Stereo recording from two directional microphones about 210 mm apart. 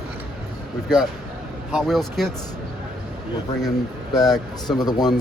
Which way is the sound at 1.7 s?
Centre (ahead or behind).